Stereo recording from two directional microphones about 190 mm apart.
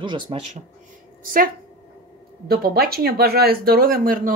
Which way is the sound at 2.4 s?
55° right (ahead or behind).